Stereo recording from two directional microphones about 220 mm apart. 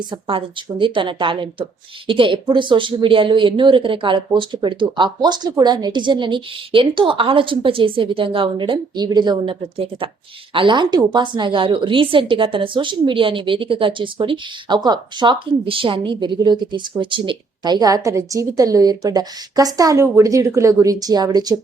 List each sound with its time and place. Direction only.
0.1 s a woman's voice: 25° right (ahead or behind)